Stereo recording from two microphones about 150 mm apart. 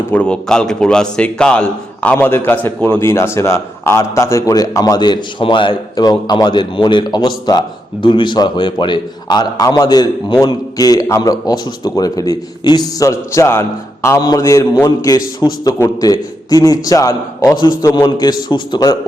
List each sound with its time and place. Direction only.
0.1 s a man's voice: 5° left (ahead or behind); by 18.9 s 30° left (ahead or behind)